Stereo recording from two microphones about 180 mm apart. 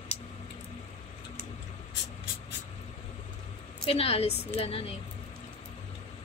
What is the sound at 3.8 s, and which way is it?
A woman's voice, 35° left (ahead or behind).